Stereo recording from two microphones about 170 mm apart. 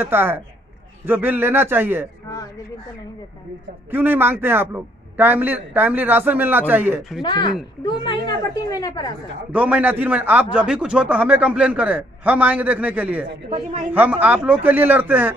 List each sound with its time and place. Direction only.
0.0 s a man's voice: 10° right (ahead or behind)
3.9 s a man's voice: 10° right (ahead or behind)
7.2 s a child's voice: 25° left (ahead or behind)
9.5 s a man's voice: 10° right (ahead or behind)